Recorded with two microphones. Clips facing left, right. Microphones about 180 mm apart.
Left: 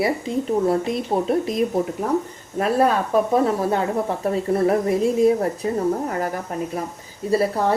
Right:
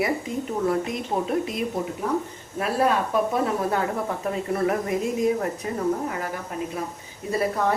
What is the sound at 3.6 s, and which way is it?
A woman's voice, 30° left (ahead or behind).